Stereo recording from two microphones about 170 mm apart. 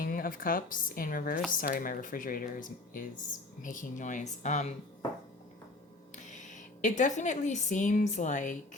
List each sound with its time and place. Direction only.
0.0 s a woman's voice: 55° left (ahead or behind)
6.2 s a woman's voice: 45° left (ahead or behind)